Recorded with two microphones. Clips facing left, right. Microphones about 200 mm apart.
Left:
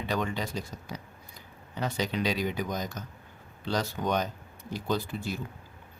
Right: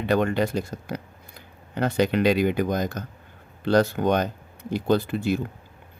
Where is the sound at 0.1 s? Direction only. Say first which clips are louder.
Right 10 dB; 60° right (ahead or behind).